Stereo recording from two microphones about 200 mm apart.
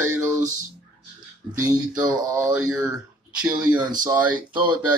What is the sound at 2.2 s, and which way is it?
Speech, 15° right (ahead or behind).